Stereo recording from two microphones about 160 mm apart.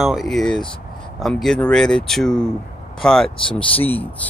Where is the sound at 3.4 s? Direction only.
35° left (ahead or behind).